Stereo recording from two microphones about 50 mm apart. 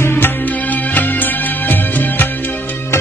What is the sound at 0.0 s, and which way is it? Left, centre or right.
Music, left.